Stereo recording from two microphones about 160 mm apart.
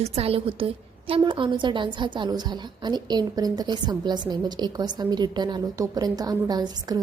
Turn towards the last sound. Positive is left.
turn(degrees=-25)  # may be behind; listen again after turning